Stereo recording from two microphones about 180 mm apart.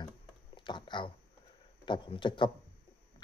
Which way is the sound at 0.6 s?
25° left (ahead or behind).